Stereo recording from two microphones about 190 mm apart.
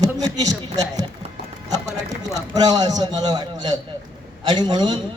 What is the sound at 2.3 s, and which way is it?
A man's voice, 20° right (ahead or behind).